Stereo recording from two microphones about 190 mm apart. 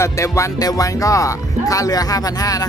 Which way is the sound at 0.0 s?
15° left (ahead or behind).